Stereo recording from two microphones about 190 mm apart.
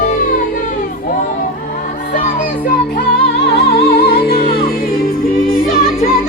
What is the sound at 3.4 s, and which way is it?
Music, 60° left (ahead or behind).